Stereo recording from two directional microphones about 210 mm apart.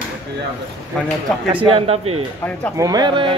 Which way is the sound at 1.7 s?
30° right (ahead or behind).